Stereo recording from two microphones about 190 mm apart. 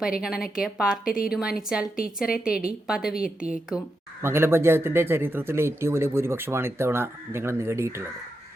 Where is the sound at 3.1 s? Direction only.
50° left (ahead or behind).